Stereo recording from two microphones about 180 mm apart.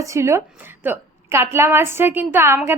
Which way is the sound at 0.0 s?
15° right (ahead or behind).